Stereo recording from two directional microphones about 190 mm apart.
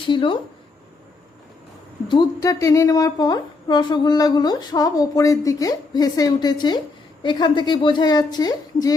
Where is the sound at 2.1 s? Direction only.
20° left (ahead or behind).